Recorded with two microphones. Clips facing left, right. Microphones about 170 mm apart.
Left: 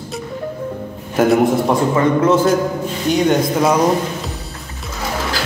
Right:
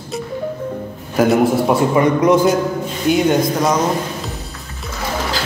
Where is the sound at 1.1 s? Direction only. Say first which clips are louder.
Even; centre (ahead or behind).